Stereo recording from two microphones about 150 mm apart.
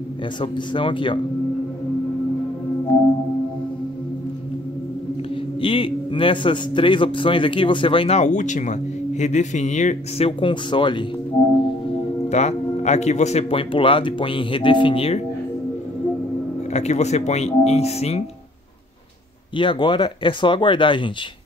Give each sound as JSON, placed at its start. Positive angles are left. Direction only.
{"t": 0.4, "sound": "speech", "side_deg": 35}
{"t": 5.6, "sound": "speech", "side_deg": 35}
{"t": 12.3, "sound": "speech", "side_deg": 50}
{"t": 16.7, "sound": "speech", "side_deg": 50}
{"t": 19.5, "sound": "speech", "side_deg": 35}